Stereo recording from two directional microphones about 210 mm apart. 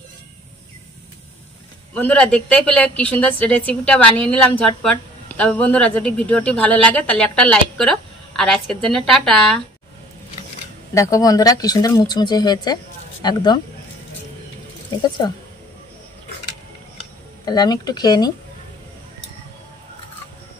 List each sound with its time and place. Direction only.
2.0 s a woman's voice: 5° left (ahead or behind)
11.0 s a woman's voice: 15° left (ahead or behind)
17.5 s speech: 20° left (ahead or behind)